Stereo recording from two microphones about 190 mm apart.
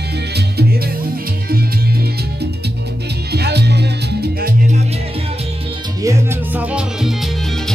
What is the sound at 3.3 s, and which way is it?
Music, 60° right (ahead or behind).